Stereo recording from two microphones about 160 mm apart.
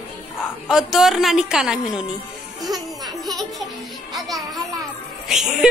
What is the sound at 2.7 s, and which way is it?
Music, centre (ahead or behind).